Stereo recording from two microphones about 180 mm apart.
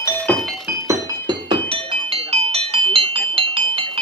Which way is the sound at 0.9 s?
25° right (ahead or behind).